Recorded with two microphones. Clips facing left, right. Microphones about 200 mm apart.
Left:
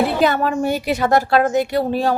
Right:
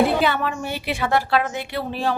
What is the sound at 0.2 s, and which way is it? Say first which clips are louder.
Speech: left 5 dB; 40° left (ahead or behind).